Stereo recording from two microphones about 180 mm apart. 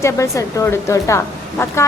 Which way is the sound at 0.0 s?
15° left (ahead or behind).